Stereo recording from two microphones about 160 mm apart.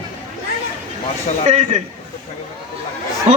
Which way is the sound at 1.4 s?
45° right (ahead or behind).